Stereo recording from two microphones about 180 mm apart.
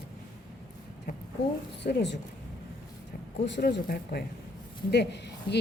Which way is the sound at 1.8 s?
70° left (ahead or behind).